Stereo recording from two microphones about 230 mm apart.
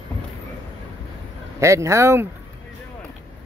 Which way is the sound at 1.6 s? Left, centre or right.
Centre.